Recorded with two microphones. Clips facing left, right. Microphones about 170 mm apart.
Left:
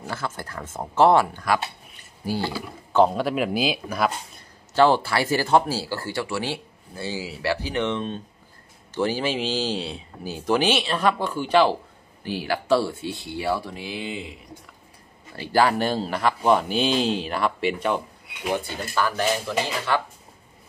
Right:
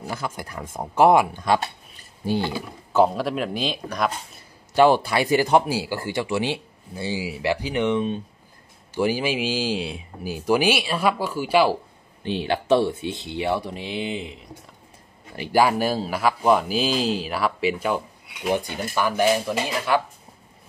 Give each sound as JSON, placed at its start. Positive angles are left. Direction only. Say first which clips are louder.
{"t": 0.1, "sound": "speech", "louder": "even", "side_deg": -15}
{"t": 2.9, "sound": "speech", "louder": "even", "side_deg": -5}
{"t": 4.7, "sound": "speech", "louder": "right 2 dB", "side_deg": -15}
{"t": 12.2, "sound": "speech", "louder": "right 2 dB", "side_deg": -20}
{"t": 15.3, "sound": "speech", "louder": "right 1 dB", "side_deg": -15}